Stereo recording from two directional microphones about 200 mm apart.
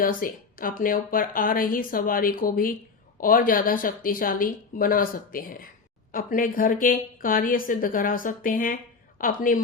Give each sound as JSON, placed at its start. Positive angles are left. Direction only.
{"t": 0.0, "sound": "a woman's voice", "side_deg": 45}